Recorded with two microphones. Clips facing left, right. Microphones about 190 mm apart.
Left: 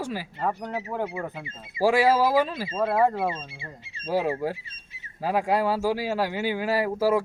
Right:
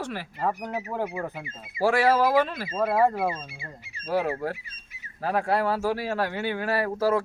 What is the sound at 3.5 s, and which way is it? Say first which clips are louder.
Speech: left 1 dB; 25° left (ahead or behind).